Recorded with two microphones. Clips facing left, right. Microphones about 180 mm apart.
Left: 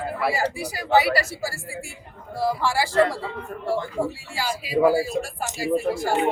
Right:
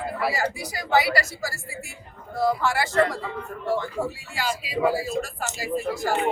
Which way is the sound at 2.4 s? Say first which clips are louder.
Even; 30° left (ahead or behind).